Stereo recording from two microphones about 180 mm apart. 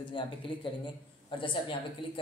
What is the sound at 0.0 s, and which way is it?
A man's voice, 25° left (ahead or behind).